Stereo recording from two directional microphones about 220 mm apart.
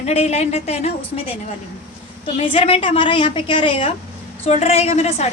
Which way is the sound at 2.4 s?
25° left (ahead or behind).